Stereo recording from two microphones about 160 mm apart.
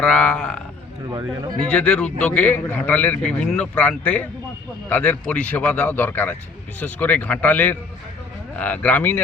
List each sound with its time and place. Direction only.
0.0 s a man's voice: 5° left (ahead or behind)
1.1 s a man's voice: 20° right (ahead or behind)
1.7 s a man's voice: 10° left (ahead or behind)